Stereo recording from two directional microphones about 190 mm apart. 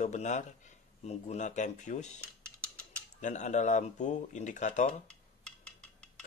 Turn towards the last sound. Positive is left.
turn(degrees=40)  # may be behind; listen again after turning